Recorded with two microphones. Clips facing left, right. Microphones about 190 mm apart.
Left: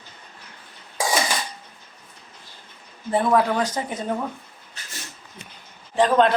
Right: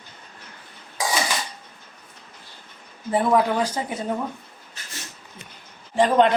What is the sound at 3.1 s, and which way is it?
Speech, 15° right (ahead or behind).